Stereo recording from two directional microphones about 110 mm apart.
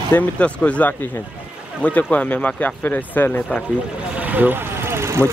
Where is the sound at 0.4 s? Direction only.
10° left (ahead or behind).